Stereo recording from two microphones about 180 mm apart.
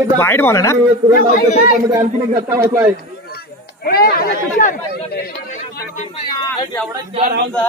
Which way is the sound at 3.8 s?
60° left (ahead or behind).